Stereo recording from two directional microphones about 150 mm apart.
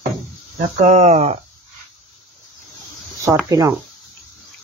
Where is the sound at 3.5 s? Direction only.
25° right (ahead or behind).